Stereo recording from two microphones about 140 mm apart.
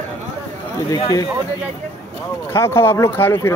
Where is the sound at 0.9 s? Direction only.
30° left (ahead or behind).